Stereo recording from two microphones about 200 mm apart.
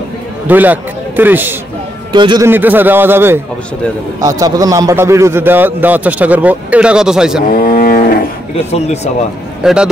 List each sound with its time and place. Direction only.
0.5 s a man's voice: 10° right (ahead or behind)
2.1 s a man's voice: 20° right (ahead or behind); by 7.4 s 5° right (ahead or behind)
7.4 s a sound: 45° left (ahead or behind)
8.7 s speech: 35° left (ahead or behind)
9.6 s a man's voice: 5° right (ahead or behind)